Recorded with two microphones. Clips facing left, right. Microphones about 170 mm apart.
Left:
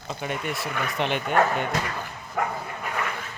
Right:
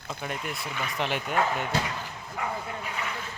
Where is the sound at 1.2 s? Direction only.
50° left (ahead or behind).